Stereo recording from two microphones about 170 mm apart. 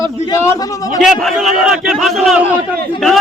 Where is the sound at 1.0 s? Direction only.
Centre (ahead or behind).